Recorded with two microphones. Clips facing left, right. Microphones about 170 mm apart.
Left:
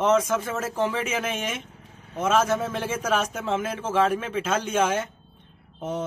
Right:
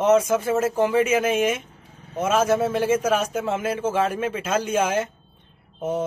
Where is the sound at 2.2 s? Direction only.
10° right (ahead or behind).